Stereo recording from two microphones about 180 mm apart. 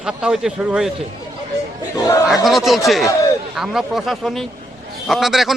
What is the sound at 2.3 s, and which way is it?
A man's voice, centre (ahead or behind).